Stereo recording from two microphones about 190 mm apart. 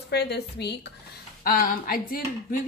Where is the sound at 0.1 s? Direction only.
60° left (ahead or behind).